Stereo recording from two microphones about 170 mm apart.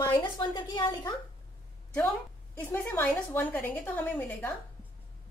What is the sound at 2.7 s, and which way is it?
A woman's voice, 10° left (ahead or behind).